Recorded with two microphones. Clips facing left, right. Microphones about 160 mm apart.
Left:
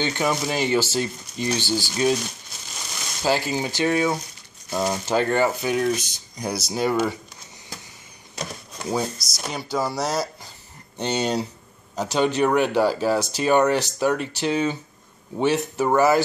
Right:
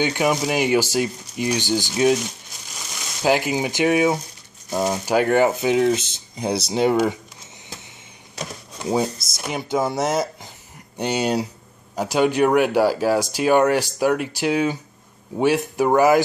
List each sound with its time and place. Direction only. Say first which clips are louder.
0.0 s speech: right 3 dB; 10° right (ahead or behind)
3.2 s speech: right 3 dB; 15° right (ahead or behind)
8.4 s speech: right 1 dB; 5° right (ahead or behind)
11.0 s speech: right 2 dB; 10° right (ahead or behind)